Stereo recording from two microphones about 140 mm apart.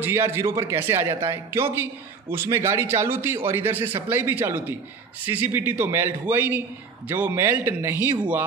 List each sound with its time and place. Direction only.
0.0 s speech: 15° right (ahead or behind)